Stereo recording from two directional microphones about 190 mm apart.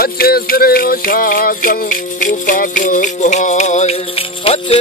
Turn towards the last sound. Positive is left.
turn(degrees=30)  # may be behind; listen again after turning